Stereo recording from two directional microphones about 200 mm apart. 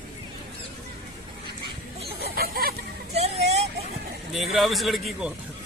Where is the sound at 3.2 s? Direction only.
30° right (ahead or behind).